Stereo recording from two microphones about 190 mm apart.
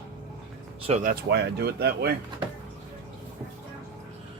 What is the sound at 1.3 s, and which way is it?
Speech, 60° right (ahead or behind).